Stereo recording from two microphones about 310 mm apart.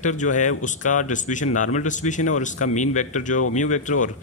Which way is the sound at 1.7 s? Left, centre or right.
Left.